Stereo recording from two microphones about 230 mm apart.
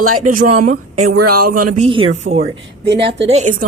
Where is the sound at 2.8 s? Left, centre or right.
Right.